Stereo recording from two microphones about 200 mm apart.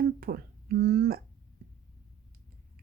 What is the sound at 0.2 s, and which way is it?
Speech, 50° right (ahead or behind).